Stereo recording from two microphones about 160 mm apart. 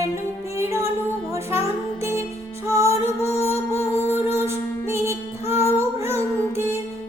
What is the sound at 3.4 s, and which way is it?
Music, 15° left (ahead or behind).